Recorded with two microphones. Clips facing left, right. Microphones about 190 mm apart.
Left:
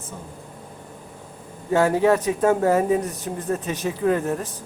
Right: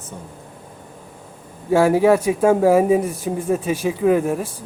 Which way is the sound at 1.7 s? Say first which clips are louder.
Right 4 dB; 10° right (ahead or behind).